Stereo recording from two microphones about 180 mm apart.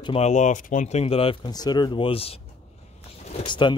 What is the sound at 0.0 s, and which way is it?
Speech, 35° left (ahead or behind).